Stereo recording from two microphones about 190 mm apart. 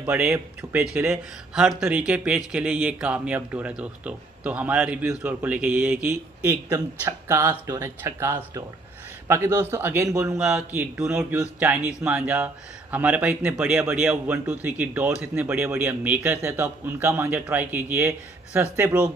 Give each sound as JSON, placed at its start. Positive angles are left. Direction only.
{"t": 0.0, "sound": "speech", "side_deg": -10}
{"t": 10.3, "sound": "speech", "side_deg": -5}